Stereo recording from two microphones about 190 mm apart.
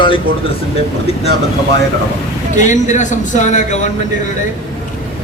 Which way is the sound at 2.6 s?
40° left (ahead or behind).